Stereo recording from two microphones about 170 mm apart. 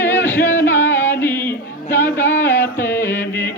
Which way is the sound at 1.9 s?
10° left (ahead or behind).